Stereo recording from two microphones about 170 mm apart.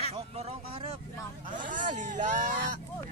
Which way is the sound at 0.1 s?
35° right (ahead or behind).